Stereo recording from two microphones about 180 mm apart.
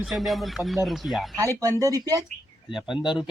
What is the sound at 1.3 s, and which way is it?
Speech, 20° right (ahead or behind).